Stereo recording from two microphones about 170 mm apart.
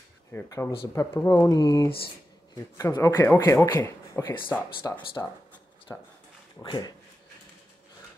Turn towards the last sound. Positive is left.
turn(degrees=25)  # may be behind; listen again after turning